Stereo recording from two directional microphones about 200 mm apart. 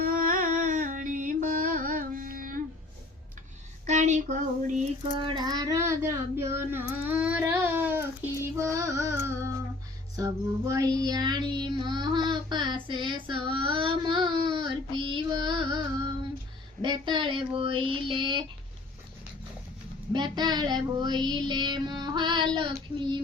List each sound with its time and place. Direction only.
0.0 s carnatic music: 40° right (ahead or behind)
3.8 s speech: 35° right (ahead or behind)
5.2 s child singing: 20° right (ahead or behind)
8.5 s music: 15° right (ahead or behind)
10.2 s child singing: 15° right (ahead or behind)
20.1 s child singing: 20° right (ahead or behind)